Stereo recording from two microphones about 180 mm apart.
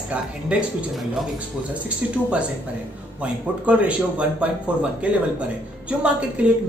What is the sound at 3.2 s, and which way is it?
Speech, 5° right (ahead or behind).